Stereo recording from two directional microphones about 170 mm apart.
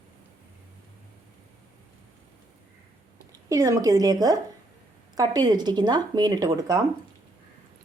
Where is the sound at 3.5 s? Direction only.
20° right (ahead or behind).